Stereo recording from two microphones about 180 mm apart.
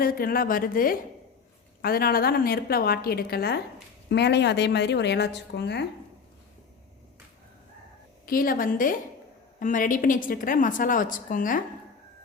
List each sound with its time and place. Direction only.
0.0 s a woman's voice: 55° left (ahead or behind)
8.3 s a woman's voice: 55° left (ahead or behind)